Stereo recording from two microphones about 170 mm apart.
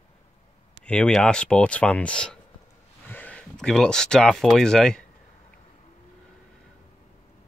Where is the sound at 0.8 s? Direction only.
5° left (ahead or behind).